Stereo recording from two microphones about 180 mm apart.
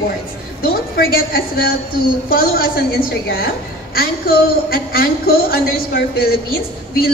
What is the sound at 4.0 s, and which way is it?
A woman's voice, 60° left (ahead or behind).